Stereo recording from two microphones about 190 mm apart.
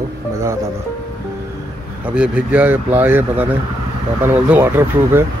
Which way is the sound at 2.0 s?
5° right (ahead or behind).